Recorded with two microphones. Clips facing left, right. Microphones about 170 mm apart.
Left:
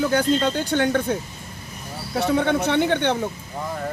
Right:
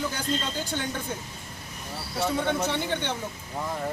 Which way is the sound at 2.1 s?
65° left (ahead or behind).